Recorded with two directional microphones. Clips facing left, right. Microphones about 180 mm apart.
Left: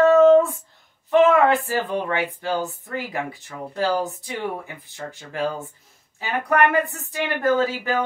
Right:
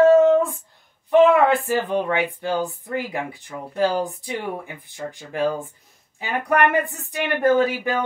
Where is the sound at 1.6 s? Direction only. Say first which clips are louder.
Right 3 dB; 15° right (ahead or behind).